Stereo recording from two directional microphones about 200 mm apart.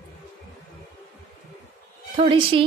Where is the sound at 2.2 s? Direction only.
25° right (ahead or behind).